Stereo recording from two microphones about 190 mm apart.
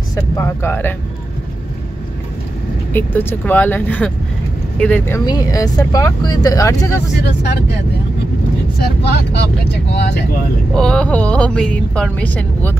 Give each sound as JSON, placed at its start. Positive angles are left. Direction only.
{"t": 0.1, "sound": "speech", "side_deg": 15}
{"t": 2.9, "sound": "speech", "side_deg": 10}
{"t": 7.2, "sound": "speech", "side_deg": 60}
{"t": 8.7, "sound": "speech", "side_deg": 55}
{"t": 10.7, "sound": "a woman's voice", "side_deg": 5}